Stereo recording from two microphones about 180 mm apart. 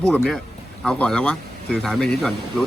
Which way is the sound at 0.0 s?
5° left (ahead or behind).